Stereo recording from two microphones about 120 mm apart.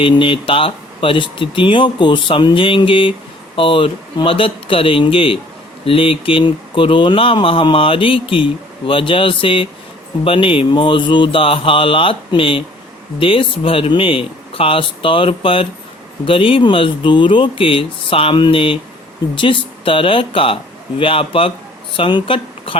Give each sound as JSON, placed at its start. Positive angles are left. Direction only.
{"t": 0.0, "sound": "speech", "side_deg": 45}